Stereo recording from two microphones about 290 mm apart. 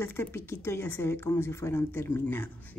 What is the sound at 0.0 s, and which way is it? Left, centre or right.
Speech, centre.